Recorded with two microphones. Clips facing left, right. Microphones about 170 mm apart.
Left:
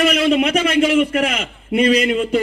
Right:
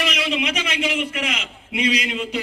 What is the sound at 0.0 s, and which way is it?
A man's voice, 50° left (ahead or behind).